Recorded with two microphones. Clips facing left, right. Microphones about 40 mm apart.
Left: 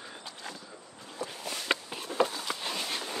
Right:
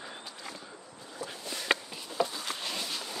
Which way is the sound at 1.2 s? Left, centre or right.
Left.